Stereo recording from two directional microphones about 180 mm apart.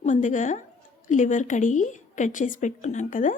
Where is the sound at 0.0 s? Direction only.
45° left (ahead or behind).